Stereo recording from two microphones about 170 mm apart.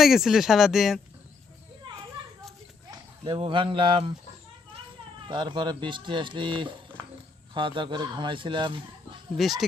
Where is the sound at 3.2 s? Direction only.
30° right (ahead or behind).